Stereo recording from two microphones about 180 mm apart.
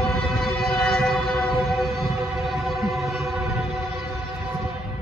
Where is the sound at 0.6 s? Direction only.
Centre (ahead or behind).